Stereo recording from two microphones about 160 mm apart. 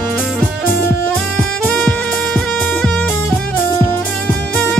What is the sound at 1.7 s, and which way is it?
Music, 10° left (ahead or behind).